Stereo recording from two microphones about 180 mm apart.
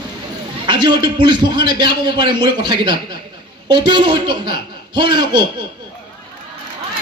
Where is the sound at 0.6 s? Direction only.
25° right (ahead or behind).